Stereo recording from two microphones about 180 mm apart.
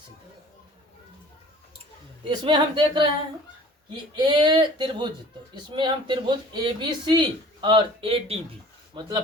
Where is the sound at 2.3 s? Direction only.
25° right (ahead or behind).